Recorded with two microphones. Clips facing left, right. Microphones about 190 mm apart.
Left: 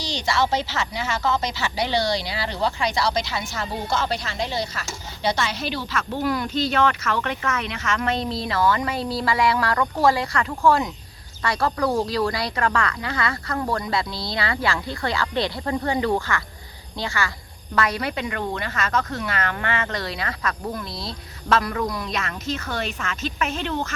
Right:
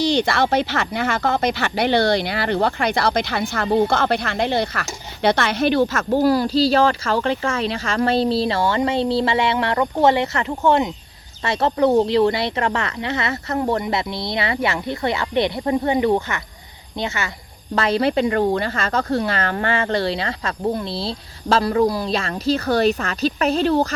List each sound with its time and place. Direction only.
0.0 s speech: 55° right (ahead or behind); by 23.9 s 35° right (ahead or behind)